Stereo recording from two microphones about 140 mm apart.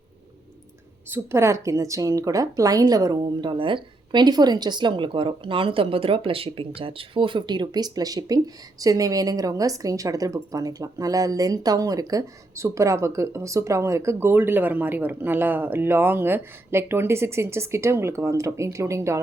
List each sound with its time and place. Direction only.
1.1 s a woman's voice: 20° right (ahead or behind)